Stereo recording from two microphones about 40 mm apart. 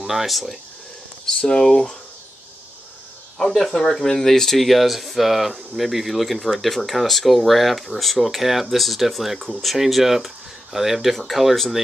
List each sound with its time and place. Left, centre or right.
0.0 s speech: centre
1.2 s speech: centre
3.3 s speech: centre